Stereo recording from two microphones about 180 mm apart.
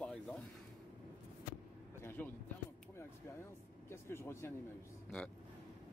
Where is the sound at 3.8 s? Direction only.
15° left (ahead or behind).